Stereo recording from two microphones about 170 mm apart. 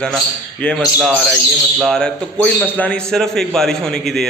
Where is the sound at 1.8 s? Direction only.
5° left (ahead or behind).